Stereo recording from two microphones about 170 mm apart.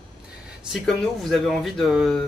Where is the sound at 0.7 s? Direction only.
Centre (ahead or behind).